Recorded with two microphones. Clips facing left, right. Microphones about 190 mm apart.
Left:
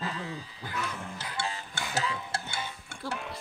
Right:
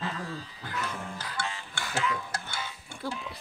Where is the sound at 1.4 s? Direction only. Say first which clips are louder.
Left 2 dB; 40° left (ahead or behind).